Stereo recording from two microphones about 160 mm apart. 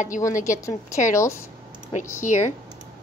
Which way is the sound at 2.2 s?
50° left (ahead or behind).